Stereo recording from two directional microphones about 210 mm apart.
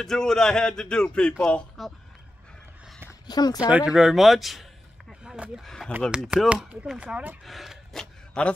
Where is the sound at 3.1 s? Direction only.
20° left (ahead or behind).